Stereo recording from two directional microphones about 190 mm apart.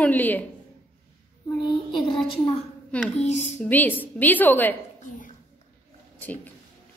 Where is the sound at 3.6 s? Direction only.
10° left (ahead or behind).